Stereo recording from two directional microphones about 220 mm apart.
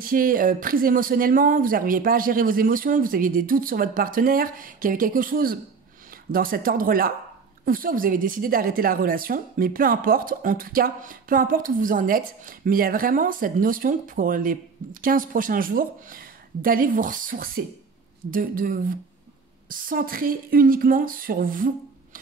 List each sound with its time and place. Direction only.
0.0 s a woman's voice: 40° right (ahead or behind)